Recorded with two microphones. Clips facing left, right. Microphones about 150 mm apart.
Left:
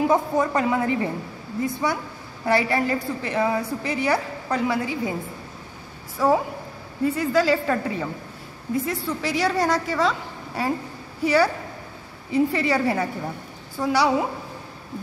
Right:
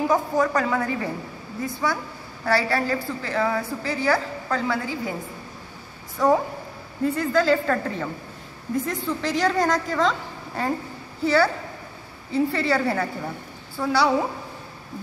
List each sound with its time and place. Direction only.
0.0 s a woman's voice: 25° left (ahead or behind)
6.1 s a woman's voice: 5° left (ahead or behind)